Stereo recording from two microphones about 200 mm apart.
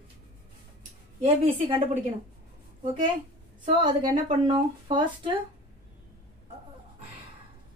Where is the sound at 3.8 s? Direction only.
20° right (ahead or behind).